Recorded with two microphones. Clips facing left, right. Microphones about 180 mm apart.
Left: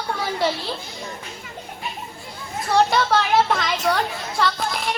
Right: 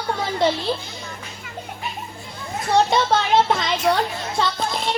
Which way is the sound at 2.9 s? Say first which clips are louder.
Right 1 dB; 25° right (ahead or behind).